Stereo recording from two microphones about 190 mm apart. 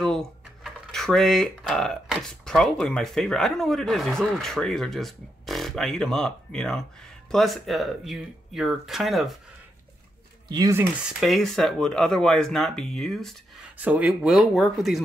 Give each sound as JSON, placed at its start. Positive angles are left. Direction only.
{"t": 0.0, "sound": "speech", "side_deg": 5}
{"t": 10.5, "sound": "speech", "side_deg": -15}
{"t": 11.1, "sound": "speech", "side_deg": 0}